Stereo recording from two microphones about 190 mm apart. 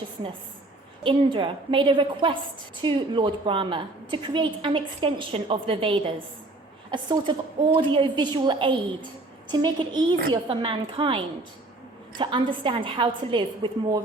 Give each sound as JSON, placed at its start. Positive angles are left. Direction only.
{"t": 1.0, "sound": "a woman's voice", "side_deg": -25}